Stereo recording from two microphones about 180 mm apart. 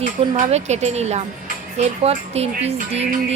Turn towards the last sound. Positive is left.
turn(degrees=-35)  # may be behind; listen again after turning